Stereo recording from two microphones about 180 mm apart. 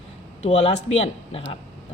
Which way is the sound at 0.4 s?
35° left (ahead or behind).